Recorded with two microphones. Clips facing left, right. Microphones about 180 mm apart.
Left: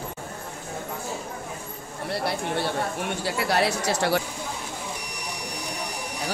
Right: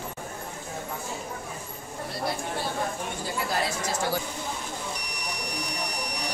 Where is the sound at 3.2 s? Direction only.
75° left (ahead or behind).